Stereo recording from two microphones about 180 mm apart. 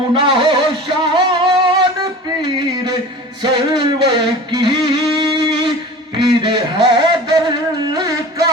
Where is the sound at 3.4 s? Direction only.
25° right (ahead or behind).